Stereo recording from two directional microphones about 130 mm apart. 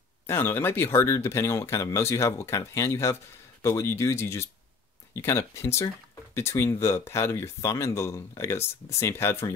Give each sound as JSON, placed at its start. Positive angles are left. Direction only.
{"t": 0.3, "sound": "speech", "side_deg": 15}